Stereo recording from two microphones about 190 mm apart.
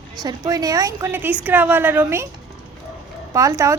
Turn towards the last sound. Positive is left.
turn(degrees=-15)  # may be behind; listen again after turning